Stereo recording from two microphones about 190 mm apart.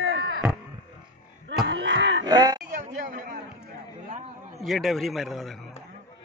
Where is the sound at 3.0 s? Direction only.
45° right (ahead or behind).